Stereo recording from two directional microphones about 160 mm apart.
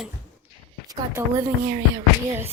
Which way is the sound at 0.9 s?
15° right (ahead or behind).